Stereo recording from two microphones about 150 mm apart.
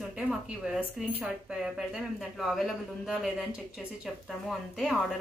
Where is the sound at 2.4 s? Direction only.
Centre (ahead or behind).